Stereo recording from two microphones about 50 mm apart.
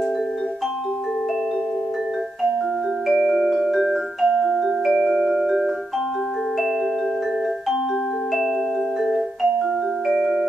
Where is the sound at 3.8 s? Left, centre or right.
Centre.